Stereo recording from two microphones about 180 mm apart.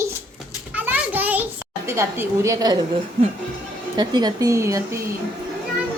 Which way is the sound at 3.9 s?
25° right (ahead or behind).